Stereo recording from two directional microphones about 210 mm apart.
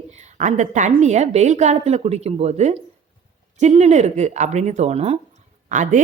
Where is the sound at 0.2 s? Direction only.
35° right (ahead or behind).